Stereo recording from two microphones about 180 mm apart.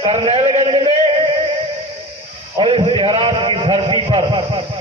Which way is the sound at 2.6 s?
30° right (ahead or behind).